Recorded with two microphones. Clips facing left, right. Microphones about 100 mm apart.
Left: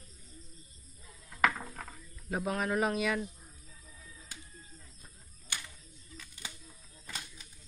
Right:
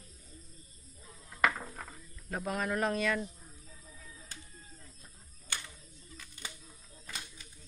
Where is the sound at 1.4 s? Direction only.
Centre (ahead or behind).